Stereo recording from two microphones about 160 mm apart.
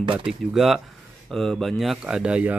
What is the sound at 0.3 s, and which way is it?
Speech, centre (ahead or behind).